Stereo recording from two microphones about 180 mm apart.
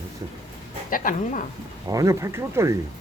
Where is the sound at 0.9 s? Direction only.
50° left (ahead or behind).